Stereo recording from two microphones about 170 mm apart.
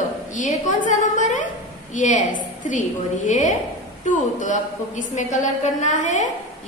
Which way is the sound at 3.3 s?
45° left (ahead or behind).